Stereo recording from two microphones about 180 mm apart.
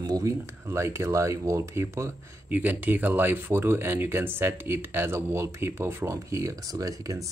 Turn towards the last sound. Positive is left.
turn(degrees=-20)  # may be behind; listen again after turning